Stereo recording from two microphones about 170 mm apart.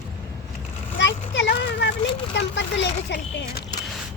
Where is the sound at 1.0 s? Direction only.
90° left.